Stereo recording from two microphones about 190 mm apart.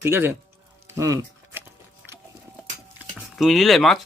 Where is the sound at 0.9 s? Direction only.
15° right (ahead or behind).